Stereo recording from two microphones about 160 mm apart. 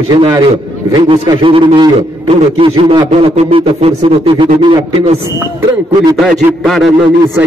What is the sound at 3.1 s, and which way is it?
A man's voice, 40° right (ahead or behind).